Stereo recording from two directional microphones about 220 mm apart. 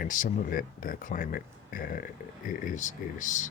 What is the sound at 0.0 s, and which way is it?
Speech, 35° left (ahead or behind).